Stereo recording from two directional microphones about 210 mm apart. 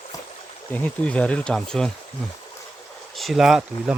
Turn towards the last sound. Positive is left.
turn(degrees=0)  # may be behind; listen again after turning